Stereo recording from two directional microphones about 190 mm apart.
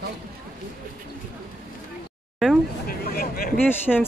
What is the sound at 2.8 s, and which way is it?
Vehicle, 50° left (ahead or behind).